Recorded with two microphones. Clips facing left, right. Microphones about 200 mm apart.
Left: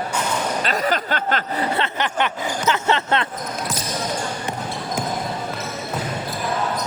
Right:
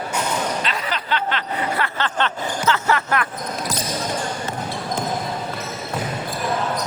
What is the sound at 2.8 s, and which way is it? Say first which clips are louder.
Speech: left 1 dB; 25° left (ahead or behind).